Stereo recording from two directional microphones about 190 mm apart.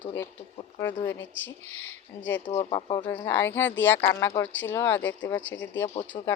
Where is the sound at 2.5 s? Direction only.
25° left (ahead or behind).